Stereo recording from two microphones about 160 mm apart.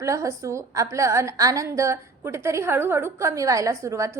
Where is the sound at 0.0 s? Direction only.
20° right (ahead or behind).